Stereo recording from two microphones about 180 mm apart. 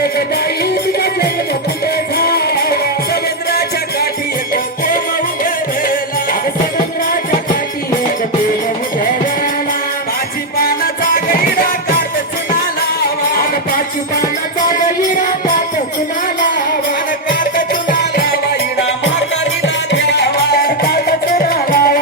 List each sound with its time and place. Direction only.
0.0 s music: 60° left (ahead or behind)
6.7 s music: 50° left (ahead or behind)
10.6 s music: 55° left (ahead or behind)
17.2 s music: 50° left (ahead or behind)
19.6 s music: 75° left (ahead or behind); by 21.9 s 55° left (ahead or behind)